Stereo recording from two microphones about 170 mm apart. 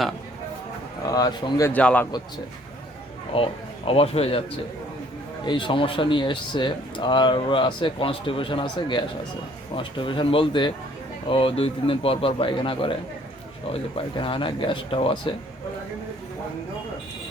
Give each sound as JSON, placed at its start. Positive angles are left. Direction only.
{"t": 1.0, "sound": "speech", "side_deg": 20}
{"t": 1.7, "sound": "a man's voice", "side_deg": 10}
{"t": 3.3, "sound": "a man's voice", "side_deg": 35}
{"t": 5.5, "sound": "a man's voice", "side_deg": 30}